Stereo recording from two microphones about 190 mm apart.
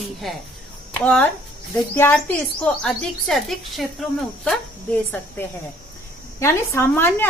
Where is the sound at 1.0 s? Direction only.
5° left (ahead or behind).